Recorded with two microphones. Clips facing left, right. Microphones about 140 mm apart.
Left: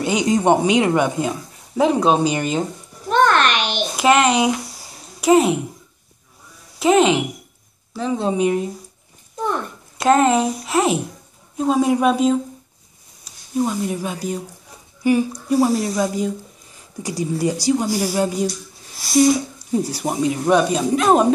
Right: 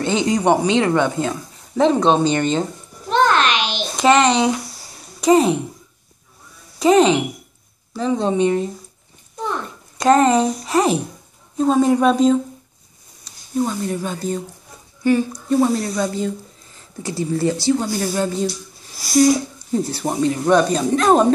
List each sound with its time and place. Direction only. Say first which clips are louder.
0.3 s speech: left 1 dB; 25° left (ahead or behind); by 2.7 s 5° left (ahead or behind)
3.1 s a sound: even; 55° left (ahead or behind)
3.9 s a woman's voice: right 1 dB; 5° left (ahead or behind)
6.8 s a child's voice: right 1 dB; 5° left (ahead or behind)
9.9 s a child's voice: right 1 dB; 5° left (ahead or behind)
19.7 s speech: even; 10° left (ahead or behind)